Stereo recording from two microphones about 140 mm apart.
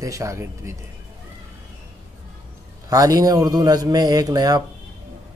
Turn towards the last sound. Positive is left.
turn(degrees=-25)  # may be behind; listen again after turning